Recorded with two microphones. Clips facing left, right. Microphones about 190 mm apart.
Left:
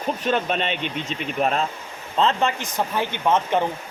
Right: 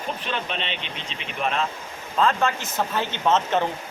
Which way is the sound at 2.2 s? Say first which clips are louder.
Left 1 dB; 20° left (ahead or behind).